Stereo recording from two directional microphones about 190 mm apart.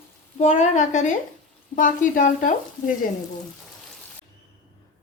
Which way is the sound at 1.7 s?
45° left (ahead or behind).